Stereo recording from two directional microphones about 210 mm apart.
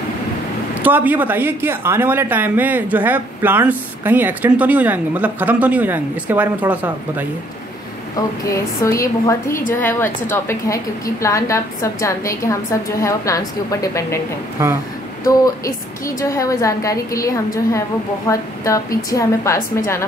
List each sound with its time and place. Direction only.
0.8 s speech: 10° right (ahead or behind)
8.5 s a woman's voice: 15° left (ahead or behind)
14.6 s speech: 10° right (ahead or behind)
15.2 s a woman's voice: 15° left (ahead or behind)